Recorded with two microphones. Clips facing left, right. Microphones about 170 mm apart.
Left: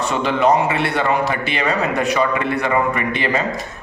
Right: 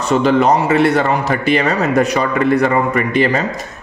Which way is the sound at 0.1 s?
40° right (ahead or behind).